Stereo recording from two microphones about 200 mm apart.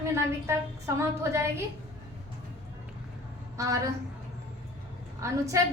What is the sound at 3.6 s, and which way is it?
Speech, 15° right (ahead or behind).